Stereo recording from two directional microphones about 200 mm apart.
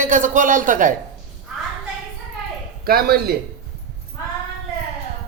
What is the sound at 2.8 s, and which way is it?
Speech, 50° right (ahead or behind).